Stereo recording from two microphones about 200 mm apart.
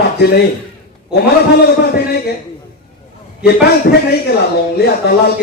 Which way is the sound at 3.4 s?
50° left (ahead or behind).